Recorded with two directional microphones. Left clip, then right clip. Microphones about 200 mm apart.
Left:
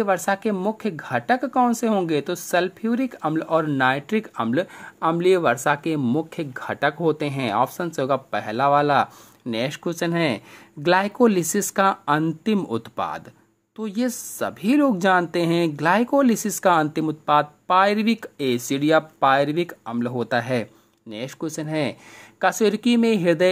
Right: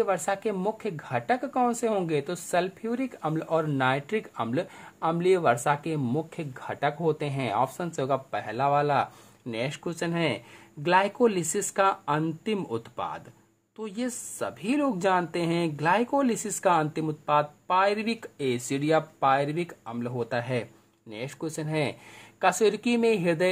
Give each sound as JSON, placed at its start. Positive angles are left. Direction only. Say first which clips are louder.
{"t": 0.0, "sound": "speech", "louder": "left 5 dB", "side_deg": 25}